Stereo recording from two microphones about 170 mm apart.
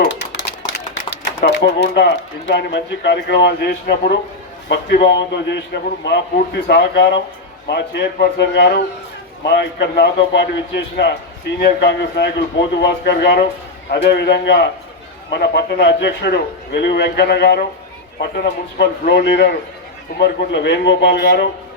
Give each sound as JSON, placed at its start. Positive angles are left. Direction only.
{"t": 0.0, "sound": "a sound", "side_deg": 90}
{"t": 1.5, "sound": "speech", "side_deg": 80}
{"t": 4.7, "sound": "a man's voice", "side_deg": 75}
{"t": 11.6, "sound": "speech", "side_deg": 85}
{"t": 12.8, "sound": "a man's voice", "side_deg": 75}
{"t": 15.3, "sound": "a man's voice", "side_deg": 80}